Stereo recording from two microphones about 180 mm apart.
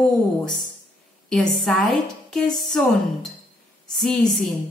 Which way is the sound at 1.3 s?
Centre (ahead or behind).